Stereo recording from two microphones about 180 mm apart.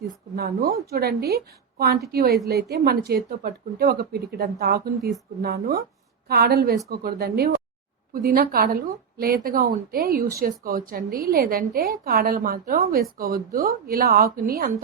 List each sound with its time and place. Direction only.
0.3 s a woman's voice: 55° right (ahead or behind)